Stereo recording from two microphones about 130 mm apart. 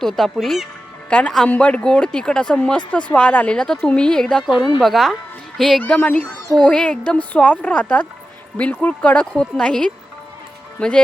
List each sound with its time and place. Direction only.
0.0 s speech: centre (ahead or behind)
5.8 s speech: 10° left (ahead or behind)